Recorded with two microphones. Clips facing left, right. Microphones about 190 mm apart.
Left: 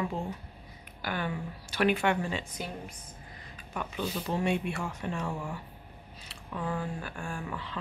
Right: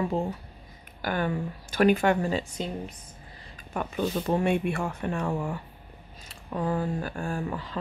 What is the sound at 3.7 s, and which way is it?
Speech, 45° right (ahead or behind).